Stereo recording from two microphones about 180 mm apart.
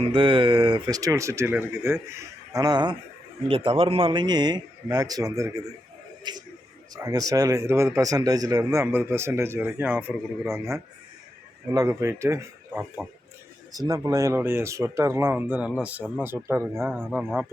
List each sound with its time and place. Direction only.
0.0 s a man's voice: 30° right (ahead or behind); by 17.4 s 5° right (ahead or behind)